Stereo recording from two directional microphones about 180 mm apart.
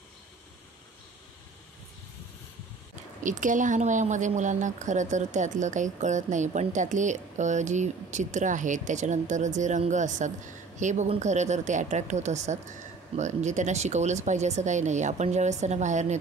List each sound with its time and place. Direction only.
3.3 s speech: 45° right (ahead or behind)